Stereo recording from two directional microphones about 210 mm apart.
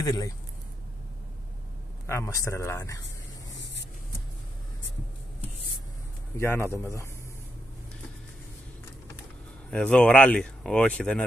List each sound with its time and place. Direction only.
0.0 s speech: 15° left (ahead or behind)
2.0 s speech: 15° left (ahead or behind)
6.3 s speech: 15° left (ahead or behind)
9.7 s speech: 5° left (ahead or behind)